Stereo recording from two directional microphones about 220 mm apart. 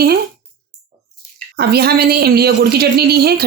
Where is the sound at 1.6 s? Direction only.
45° right (ahead or behind).